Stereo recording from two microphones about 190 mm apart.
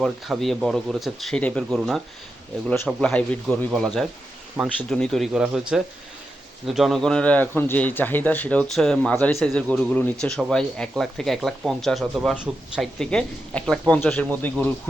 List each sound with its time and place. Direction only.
0.0 s speech: centre (ahead or behind)
6.7 s a man's voice: centre (ahead or behind)